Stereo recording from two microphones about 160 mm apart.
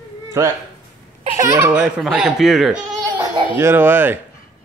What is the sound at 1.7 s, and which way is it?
Speech, 5° right (ahead or behind).